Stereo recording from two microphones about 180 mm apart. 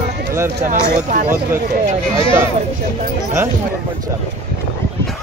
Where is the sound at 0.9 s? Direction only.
45° right (ahead or behind).